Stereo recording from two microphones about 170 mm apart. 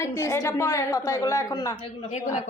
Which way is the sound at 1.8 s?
45° left (ahead or behind).